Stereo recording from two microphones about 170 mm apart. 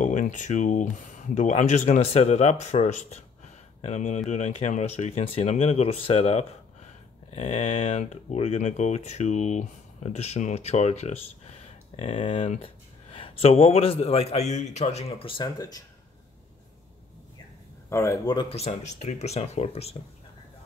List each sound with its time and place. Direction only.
0.0 s speech: 45° left (ahead or behind); by 15.8 s 20° left (ahead or behind)
17.8 s speech: 15° left (ahead or behind)
18.6 s speech: 40° left (ahead or behind)